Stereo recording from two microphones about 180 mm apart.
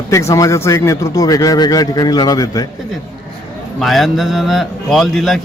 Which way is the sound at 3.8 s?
Centre (ahead or behind).